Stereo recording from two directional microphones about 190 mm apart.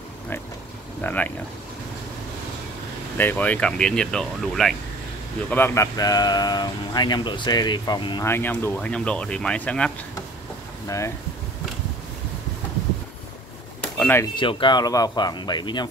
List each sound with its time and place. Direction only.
1.0 s speech: 10° left (ahead or behind)
3.2 s speech: 10° left (ahead or behind)
5.5 s speech: 15° left (ahead or behind)
8.3 s speech: 10° left (ahead or behind)
13.9 s speech: 10° left (ahead or behind)
14.3 s speech: 25° left (ahead or behind)